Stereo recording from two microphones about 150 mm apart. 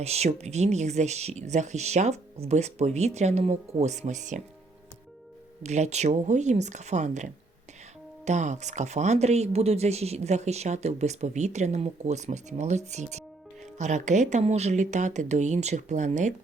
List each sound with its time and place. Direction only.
0.0 s speech: 45° right (ahead or behind)
5.6 s speech: 50° right (ahead or behind)